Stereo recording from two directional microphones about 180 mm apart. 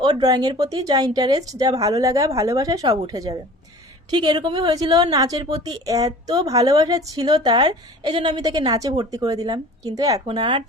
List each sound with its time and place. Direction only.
0.0 s a woman's voice: 20° right (ahead or behind)